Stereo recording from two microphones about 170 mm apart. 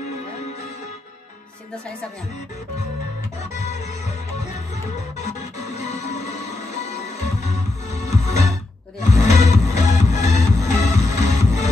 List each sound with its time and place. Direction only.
3.5 s music: 40° left (ahead or behind)
4.9 s music: 40° left (ahead or behind)